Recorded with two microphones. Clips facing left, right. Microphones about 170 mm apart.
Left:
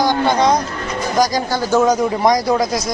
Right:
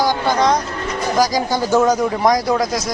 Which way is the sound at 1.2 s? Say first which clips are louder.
Even; 15° right (ahead or behind).